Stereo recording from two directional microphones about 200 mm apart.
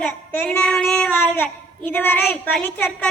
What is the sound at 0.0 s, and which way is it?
Child singing, 10° left (ahead or behind).